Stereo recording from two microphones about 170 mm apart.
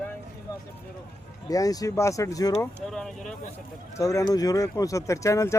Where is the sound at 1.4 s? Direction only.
20° left (ahead or behind).